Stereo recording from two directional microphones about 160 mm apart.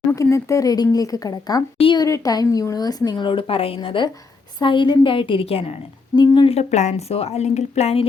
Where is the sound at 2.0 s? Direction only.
20° left (ahead or behind).